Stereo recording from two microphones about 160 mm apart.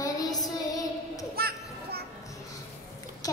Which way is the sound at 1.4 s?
75° right (ahead or behind).